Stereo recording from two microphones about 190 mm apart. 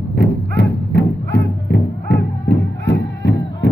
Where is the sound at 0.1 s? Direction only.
60° left (ahead or behind).